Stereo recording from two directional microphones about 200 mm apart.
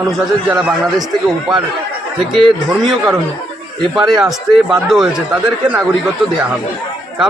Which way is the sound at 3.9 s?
Centre (ahead or behind).